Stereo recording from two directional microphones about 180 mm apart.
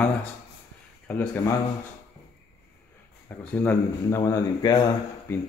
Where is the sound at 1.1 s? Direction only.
10° left (ahead or behind).